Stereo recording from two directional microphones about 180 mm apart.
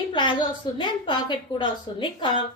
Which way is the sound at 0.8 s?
25° left (ahead or behind).